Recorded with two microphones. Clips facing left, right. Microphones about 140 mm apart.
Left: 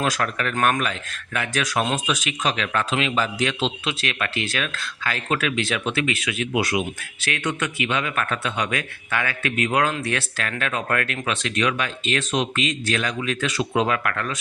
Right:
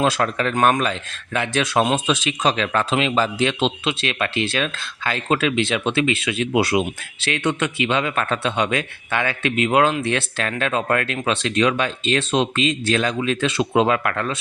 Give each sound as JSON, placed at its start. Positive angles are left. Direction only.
{"t": 0.0, "sound": "speech", "side_deg": -25}